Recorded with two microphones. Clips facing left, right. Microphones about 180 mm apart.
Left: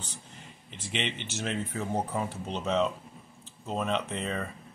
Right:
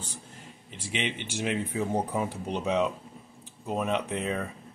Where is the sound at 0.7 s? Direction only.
10° right (ahead or behind).